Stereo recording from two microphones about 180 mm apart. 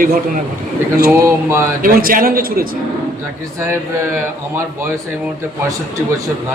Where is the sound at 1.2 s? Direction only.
15° right (ahead or behind).